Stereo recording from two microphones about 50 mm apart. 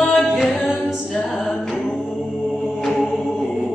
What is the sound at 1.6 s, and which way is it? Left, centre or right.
A capella, centre.